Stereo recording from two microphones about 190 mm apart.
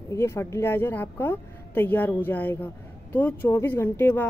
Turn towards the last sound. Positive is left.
turn(degrees=10)  # may be behind; listen again after turning